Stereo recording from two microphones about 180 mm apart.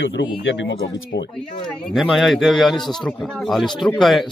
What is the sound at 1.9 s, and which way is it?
A man's voice, centre (ahead or behind).